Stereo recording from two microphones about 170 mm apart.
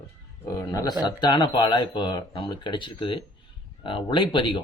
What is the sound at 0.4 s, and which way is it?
Speech, 20° left (ahead or behind).